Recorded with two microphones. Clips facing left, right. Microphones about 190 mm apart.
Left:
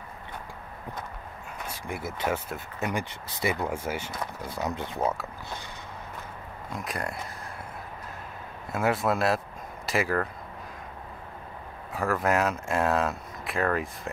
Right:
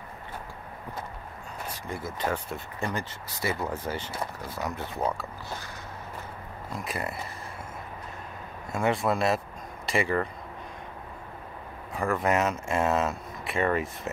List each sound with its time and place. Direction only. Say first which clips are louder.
1.7 s speech: left 1 dB; 10° left (ahead or behind)
6.7 s speech: even; centre (ahead or behind)
8.7 s speech: even; centre (ahead or behind)
11.9 s speech: even; centre (ahead or behind)